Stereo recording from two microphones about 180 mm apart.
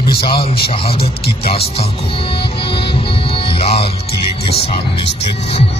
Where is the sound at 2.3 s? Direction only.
30° left (ahead or behind).